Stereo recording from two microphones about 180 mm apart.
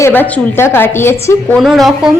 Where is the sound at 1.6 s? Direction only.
Centre (ahead or behind).